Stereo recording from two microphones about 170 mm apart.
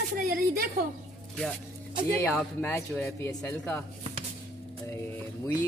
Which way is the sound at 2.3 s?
5° left (ahead or behind).